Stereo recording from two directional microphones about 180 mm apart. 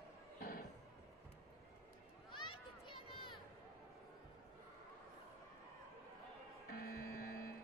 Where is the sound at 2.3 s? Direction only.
25° left (ahead or behind).